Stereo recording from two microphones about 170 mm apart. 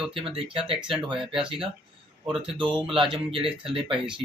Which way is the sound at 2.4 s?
30° right (ahead or behind).